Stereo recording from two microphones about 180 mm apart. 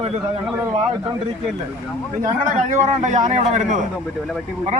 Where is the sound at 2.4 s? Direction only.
45° right (ahead or behind).